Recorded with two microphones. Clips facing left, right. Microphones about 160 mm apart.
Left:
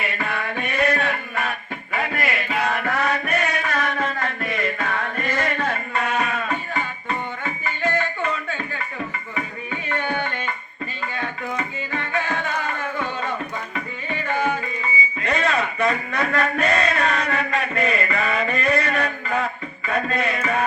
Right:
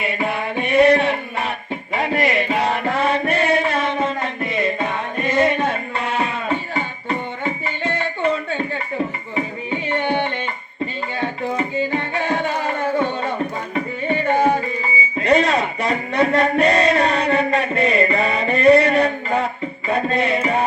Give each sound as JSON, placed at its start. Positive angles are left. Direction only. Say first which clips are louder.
{"t": 0.0, "sound": "music", "louder": "right 5 dB", "side_deg": -20}
{"t": 15.2, "sound": "a sound", "louder": "right 7 dB", "side_deg": -35}
{"t": 19.9, "sound": "music", "louder": "right 4 dB", "side_deg": -30}